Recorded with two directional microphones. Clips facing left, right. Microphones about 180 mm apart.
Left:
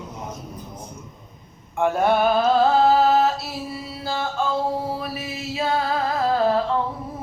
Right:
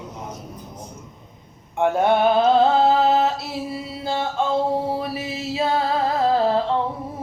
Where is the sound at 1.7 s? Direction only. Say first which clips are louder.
Right 1 dB; 20° right (ahead or behind).